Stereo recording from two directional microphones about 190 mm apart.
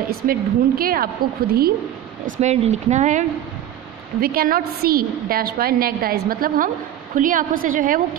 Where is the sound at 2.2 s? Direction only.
40° right (ahead or behind).